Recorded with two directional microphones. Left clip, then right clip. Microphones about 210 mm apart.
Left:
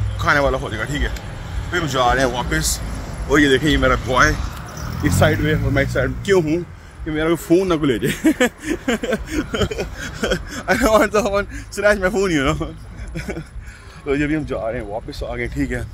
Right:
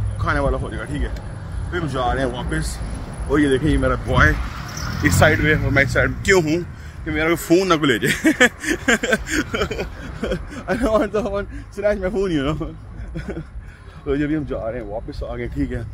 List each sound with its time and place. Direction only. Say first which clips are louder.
0.2 s a man's voice: left 5 dB; 5° left (ahead or behind)
5.7 s a man's voice: right 2 dB; 15° left (ahead or behind)
9.6 s speech: left 1 dB; 20° left (ahead or behind)
10.0 s a man's voice: left 4 dB; 5° left (ahead or behind)